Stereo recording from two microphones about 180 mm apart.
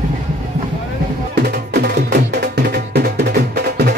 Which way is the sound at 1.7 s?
65° right (ahead or behind).